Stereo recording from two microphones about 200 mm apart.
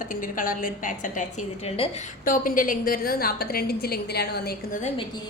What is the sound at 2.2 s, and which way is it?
Speech, 45° left (ahead or behind).